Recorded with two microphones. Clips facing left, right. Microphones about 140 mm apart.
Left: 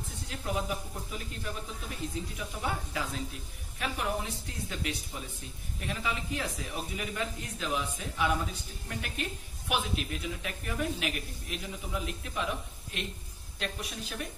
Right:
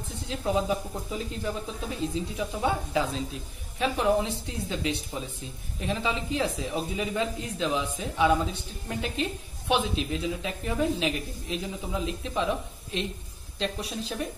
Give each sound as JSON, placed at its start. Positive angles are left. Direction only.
{"t": 0.3, "sound": "speech", "side_deg": -25}